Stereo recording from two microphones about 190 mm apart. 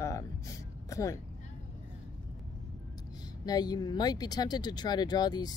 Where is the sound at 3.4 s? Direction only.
20° left (ahead or behind).